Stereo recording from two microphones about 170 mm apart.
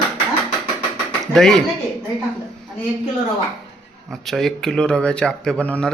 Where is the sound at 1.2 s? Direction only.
Centre (ahead or behind).